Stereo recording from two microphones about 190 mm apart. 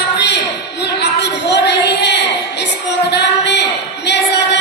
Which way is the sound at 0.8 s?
65° left (ahead or behind).